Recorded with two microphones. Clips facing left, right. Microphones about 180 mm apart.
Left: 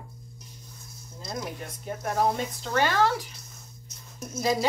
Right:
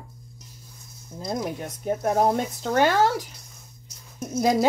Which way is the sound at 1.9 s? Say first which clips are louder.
Right 5 dB; 50° right (ahead or behind).